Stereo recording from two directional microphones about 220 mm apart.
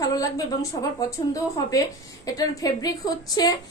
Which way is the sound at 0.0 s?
15° left (ahead or behind).